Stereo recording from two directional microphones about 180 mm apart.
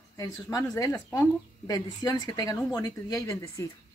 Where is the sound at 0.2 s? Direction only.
20° left (ahead or behind).